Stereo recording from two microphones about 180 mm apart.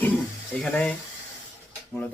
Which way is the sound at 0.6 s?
5° left (ahead or behind).